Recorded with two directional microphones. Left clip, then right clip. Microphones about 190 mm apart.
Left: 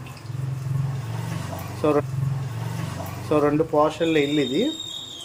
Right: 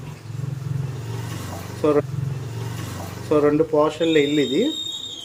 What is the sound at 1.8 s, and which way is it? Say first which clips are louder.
Speech: right 2 dB; centre (ahead or behind).